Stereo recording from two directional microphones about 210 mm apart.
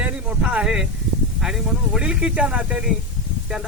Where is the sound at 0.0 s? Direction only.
5° right (ahead or behind).